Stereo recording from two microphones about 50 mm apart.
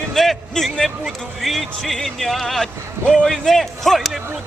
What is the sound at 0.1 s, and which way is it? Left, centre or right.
A man's voice, centre.